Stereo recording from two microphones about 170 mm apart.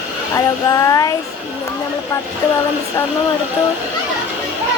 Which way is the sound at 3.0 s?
15° left (ahead or behind).